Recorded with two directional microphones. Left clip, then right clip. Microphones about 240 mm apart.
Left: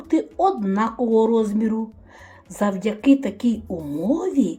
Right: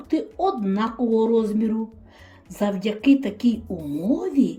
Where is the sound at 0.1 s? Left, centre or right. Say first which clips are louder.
Left 3 dB; centre.